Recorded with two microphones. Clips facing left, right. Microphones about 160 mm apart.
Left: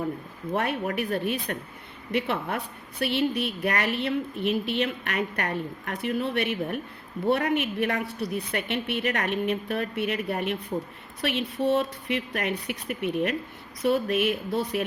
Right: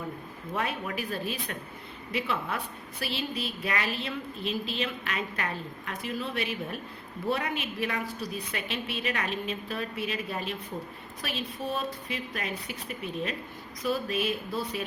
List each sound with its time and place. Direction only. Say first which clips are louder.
0.5 s a woman's voice: left 5 dB; 65° left (ahead or behind)